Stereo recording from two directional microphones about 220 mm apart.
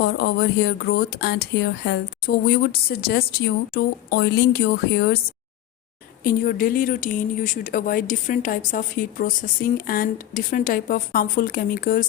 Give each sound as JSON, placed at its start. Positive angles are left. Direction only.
{"t": 0.0, "sound": "speech", "side_deg": 50}
{"t": 6.2, "sound": "speech", "side_deg": 40}